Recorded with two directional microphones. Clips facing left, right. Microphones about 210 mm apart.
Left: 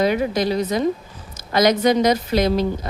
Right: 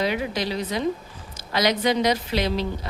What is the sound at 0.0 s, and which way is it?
Speech, 45° left (ahead or behind).